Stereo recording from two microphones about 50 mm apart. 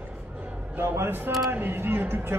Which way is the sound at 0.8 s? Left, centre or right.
Right.